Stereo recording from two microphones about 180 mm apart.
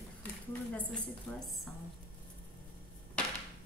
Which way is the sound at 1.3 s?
10° left (ahead or behind).